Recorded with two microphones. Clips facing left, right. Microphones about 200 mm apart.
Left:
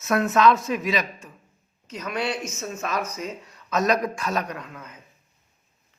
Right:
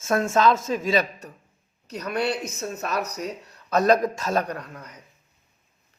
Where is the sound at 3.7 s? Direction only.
30° right (ahead or behind).